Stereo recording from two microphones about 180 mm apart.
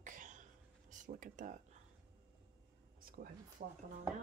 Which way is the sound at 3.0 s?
55° right (ahead or behind).